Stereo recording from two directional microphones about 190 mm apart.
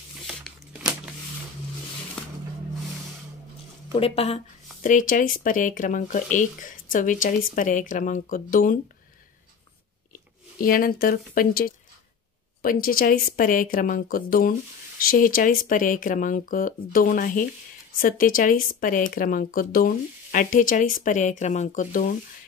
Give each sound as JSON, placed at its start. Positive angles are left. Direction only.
{"t": 0.3, "sound": "crumpling", "side_deg": 0}
{"t": 3.9, "sound": "speech", "side_deg": 30}
{"t": 4.8, "sound": "speech", "side_deg": 45}
{"t": 10.6, "sound": "speech", "side_deg": 50}